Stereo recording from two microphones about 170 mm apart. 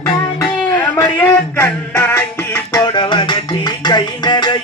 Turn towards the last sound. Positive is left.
turn(degrees=25)  # may be behind; listen again after turning